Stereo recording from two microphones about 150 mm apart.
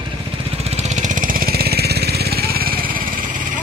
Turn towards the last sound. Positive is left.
turn(degrees=-60)  # may be behind; listen again after turning